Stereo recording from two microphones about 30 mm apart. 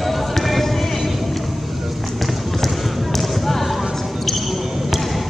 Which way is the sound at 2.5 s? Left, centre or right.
Centre.